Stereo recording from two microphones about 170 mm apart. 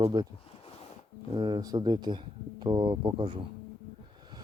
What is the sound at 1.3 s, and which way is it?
Speech, 25° right (ahead or behind).